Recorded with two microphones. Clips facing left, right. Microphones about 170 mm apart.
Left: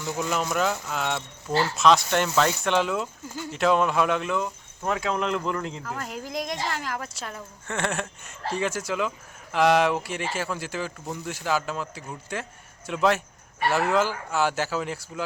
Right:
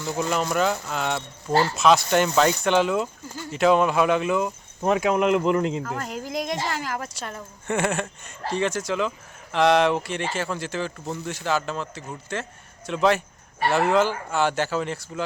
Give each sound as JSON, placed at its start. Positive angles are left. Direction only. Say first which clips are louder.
{"t": 0.0, "sound": "speech", "louder": "right 2 dB", "side_deg": 0}
{"t": 6.0, "sound": "speech", "louder": "right 3 dB", "side_deg": 0}